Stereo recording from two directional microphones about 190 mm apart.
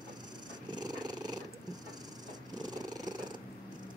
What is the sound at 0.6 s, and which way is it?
Purr, 20° right (ahead or behind).